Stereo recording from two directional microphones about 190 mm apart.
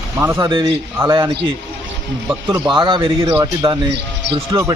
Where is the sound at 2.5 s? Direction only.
20° right (ahead or behind).